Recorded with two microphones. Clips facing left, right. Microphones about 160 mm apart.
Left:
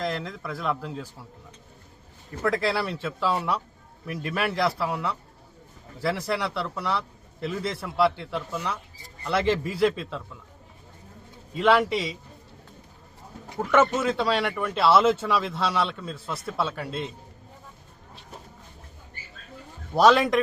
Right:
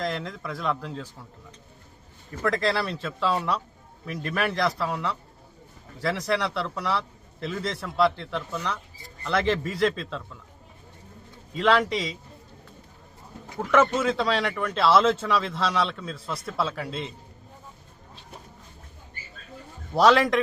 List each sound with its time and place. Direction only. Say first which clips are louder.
0.0 s speech: even; centre (ahead or behind)
2.4 s a man's voice: even; 5° left (ahead or behind)
11.5 s speech: left 1 dB; 5° left (ahead or behind)
13.6 s speech: even; 5° left (ahead or behind)
19.9 s speech: left 1 dB; centre (ahead or behind)